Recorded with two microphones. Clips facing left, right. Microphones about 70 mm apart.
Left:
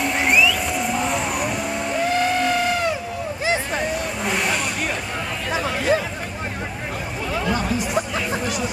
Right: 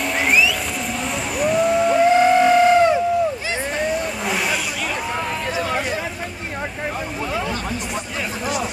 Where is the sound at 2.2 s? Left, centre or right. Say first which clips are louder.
Right 6 dB; centre.